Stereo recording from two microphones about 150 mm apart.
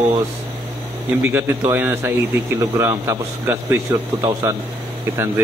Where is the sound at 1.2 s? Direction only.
15° right (ahead or behind).